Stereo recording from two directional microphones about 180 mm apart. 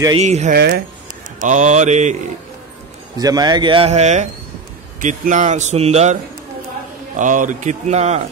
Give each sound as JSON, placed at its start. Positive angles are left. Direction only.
{"t": 0.2, "sound": "speech", "side_deg": -40}
{"t": 0.6, "sound": "speech", "side_deg": -60}
{"t": 1.4, "sound": "speech", "side_deg": -40}
{"t": 3.2, "sound": "speech", "side_deg": -20}
{"t": 7.2, "sound": "speech", "side_deg": -45}